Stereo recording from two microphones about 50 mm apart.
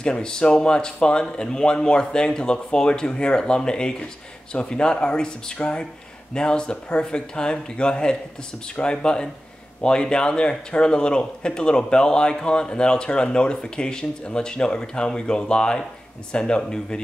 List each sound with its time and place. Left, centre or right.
0.0 s speech: centre